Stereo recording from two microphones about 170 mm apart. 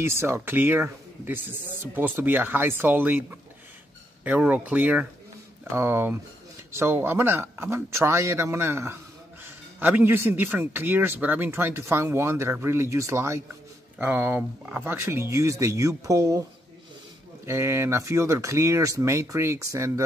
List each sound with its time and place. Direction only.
0.0 s a man's voice: 15° right (ahead or behind)
17.5 s a man's voice: 15° right (ahead or behind)